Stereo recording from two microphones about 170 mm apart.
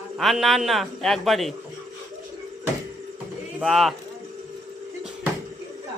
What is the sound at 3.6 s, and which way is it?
Speech, centre (ahead or behind).